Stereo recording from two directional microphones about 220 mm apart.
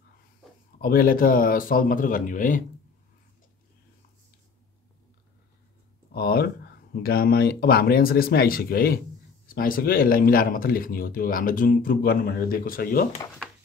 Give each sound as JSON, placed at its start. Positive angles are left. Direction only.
{"t": 0.7, "sound": "speech", "side_deg": 40}
{"t": 6.1, "sound": "speech", "side_deg": 45}